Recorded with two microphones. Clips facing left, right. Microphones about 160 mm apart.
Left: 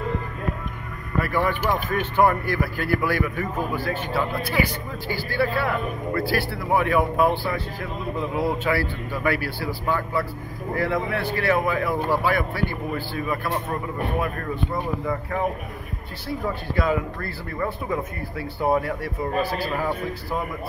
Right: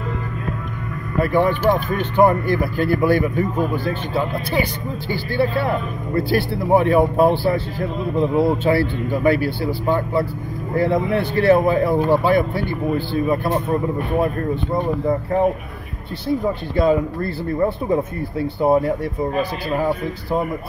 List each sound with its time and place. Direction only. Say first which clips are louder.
1.2 s a man's voice: right 7 dB; 20° right (ahead or behind)